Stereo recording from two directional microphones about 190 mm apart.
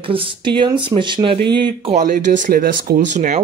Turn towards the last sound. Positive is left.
turn(degrees=-40)  # may be behind; listen again after turning